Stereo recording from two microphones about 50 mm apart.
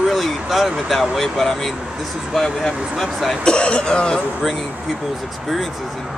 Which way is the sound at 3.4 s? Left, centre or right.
Left.